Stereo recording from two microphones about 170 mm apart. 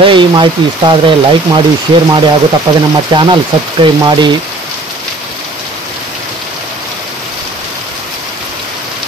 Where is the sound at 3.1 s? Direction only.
30° right (ahead or behind).